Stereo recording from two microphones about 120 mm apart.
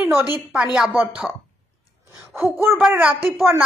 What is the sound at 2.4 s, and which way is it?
Speech, 20° right (ahead or behind).